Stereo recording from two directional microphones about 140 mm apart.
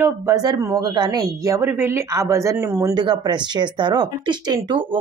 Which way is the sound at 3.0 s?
30° right (ahead or behind).